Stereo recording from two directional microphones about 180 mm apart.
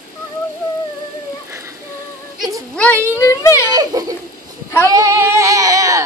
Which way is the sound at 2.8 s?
10° left (ahead or behind).